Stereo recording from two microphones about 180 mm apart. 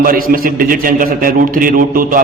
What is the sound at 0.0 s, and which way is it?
A man's voice, 50° right (ahead or behind).